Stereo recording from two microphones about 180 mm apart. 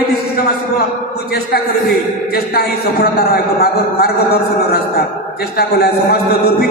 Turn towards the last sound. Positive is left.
turn(degrees=60)  # may be behind; listen again after turning